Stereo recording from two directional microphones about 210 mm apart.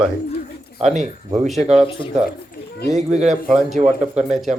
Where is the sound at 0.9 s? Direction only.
30° right (ahead or behind).